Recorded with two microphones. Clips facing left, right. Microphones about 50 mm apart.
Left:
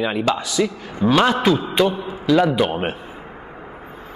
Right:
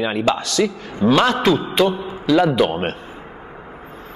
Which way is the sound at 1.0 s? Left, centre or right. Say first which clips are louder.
Right 1 dB; centre.